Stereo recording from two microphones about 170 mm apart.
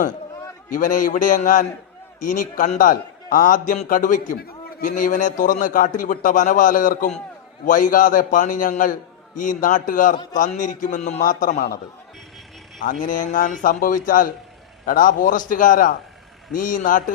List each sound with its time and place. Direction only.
0.7 s a man's voice: 50° left (ahead or behind)
12.8 s a man's voice: 50° left (ahead or behind)